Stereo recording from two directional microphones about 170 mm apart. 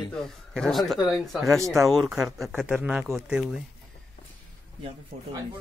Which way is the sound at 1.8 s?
Centre (ahead or behind).